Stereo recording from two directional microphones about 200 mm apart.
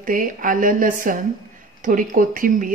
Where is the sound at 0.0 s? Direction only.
45° right (ahead or behind).